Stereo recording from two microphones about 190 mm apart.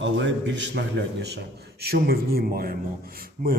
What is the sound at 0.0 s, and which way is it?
A man's voice, 70° right (ahead or behind).